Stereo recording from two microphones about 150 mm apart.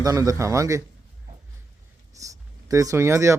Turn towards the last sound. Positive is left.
turn(degrees=-20)  # may be behind; listen again after turning